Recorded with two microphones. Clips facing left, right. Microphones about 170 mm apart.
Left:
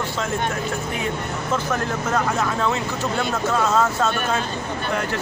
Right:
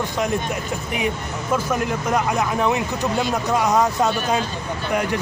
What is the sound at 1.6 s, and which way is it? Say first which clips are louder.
Speech: right 2 dB; 15° right (ahead or behind).